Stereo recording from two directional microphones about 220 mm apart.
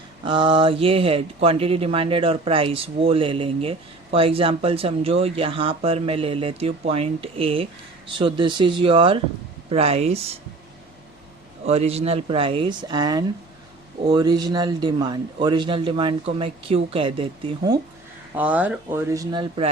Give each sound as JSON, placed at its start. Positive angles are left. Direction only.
{"t": 0.3, "sound": "speech", "side_deg": -25}
{"t": 11.6, "sound": "speech", "side_deg": -30}
{"t": 18.3, "sound": "speech", "side_deg": -5}